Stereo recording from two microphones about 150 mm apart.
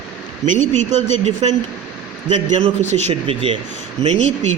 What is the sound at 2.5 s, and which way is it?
Speech, 50° right (ahead or behind).